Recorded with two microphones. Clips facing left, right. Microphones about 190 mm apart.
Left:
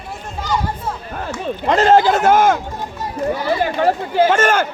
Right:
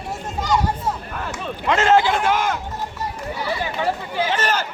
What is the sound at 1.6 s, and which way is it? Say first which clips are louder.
Speech: left 4 dB; 35° left (ahead or behind).